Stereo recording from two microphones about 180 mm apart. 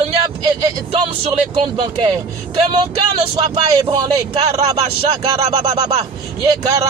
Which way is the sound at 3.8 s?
25° right (ahead or behind).